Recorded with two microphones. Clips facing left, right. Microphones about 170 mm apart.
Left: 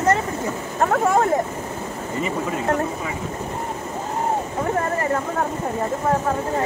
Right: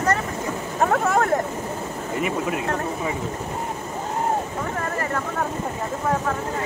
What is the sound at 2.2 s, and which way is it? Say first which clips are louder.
Speech: even; 5° right (ahead or behind).